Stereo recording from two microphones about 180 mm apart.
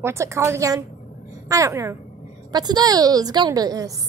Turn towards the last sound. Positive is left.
turn(degrees=-20)  # may be behind; listen again after turning